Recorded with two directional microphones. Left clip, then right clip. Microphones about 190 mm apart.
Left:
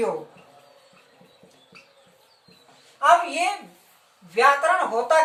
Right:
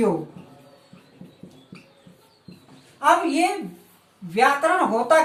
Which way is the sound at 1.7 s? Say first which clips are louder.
Left 1 dB; centre (ahead or behind).